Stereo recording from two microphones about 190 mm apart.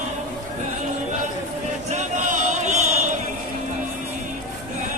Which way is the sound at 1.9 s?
40° right (ahead or behind).